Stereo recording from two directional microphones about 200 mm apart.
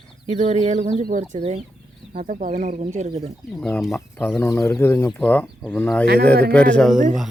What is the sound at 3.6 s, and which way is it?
Speech, centre (ahead or behind).